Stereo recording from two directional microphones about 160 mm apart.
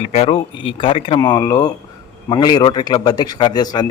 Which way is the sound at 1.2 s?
25° left (ahead or behind).